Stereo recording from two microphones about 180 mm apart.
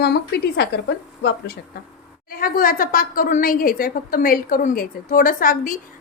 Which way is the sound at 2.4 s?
50° left (ahead or behind).